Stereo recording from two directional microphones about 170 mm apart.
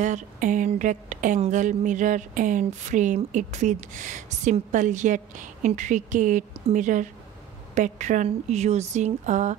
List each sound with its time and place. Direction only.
0.0 s speech: 45° right (ahead or behind)